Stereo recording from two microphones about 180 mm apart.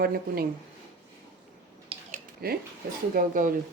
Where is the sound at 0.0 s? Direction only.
55° right (ahead or behind).